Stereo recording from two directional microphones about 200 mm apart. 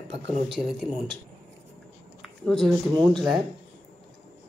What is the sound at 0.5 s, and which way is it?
Speech, centre (ahead or behind).